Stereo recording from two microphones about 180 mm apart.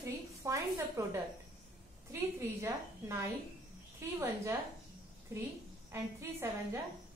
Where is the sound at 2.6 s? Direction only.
15° right (ahead or behind).